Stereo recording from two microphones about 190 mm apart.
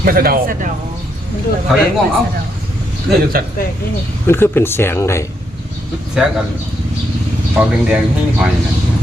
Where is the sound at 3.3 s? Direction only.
50° right (ahead or behind).